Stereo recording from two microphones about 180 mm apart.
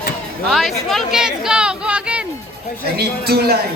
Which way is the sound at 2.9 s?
60° right (ahead or behind).